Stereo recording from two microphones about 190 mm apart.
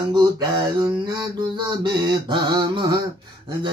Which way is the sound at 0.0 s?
20° right (ahead or behind).